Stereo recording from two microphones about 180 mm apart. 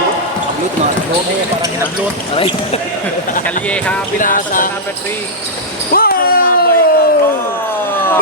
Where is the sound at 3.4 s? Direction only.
5° left (ahead or behind).